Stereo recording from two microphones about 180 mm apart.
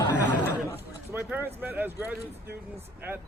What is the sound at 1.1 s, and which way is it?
Speech, 10° right (ahead or behind).